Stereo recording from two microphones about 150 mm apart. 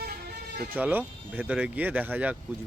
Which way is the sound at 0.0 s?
90° right.